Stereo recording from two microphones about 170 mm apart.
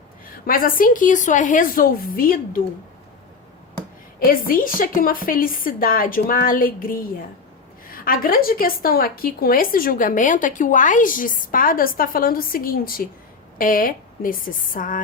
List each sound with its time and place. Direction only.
0.4 s a woman's voice: 55° left (ahead or behind)
4.2 s a woman's voice: 60° left (ahead or behind)